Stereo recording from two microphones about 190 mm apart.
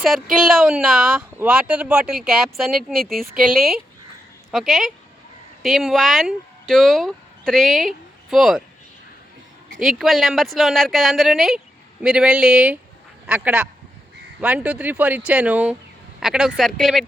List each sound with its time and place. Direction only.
0.4 s speech: centre (ahead or behind)
2.9 s speech: 50° right (ahead or behind)
3.5 s speech: centre (ahead or behind)
9.8 s speech: centre (ahead or behind)